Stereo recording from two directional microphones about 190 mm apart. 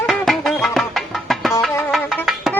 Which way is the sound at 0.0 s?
Centre (ahead or behind).